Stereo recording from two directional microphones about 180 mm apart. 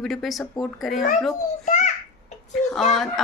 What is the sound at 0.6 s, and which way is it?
Speech, centre (ahead or behind).